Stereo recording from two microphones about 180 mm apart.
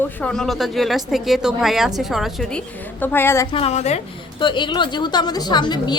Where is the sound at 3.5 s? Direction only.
35° left (ahead or behind).